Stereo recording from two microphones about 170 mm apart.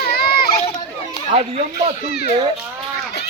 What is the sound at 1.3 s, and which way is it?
Speech, 35° right (ahead or behind).